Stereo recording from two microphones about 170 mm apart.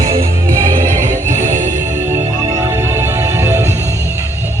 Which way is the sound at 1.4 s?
45° right (ahead or behind).